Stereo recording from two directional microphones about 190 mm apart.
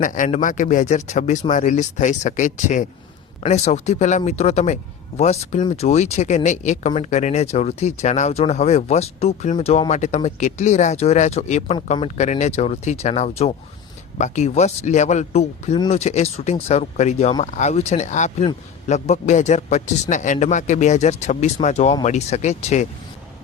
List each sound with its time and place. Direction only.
0.0 s speech: 45° left (ahead or behind)